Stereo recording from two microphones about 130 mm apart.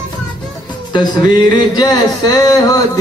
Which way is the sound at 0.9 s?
35° left (ahead or behind).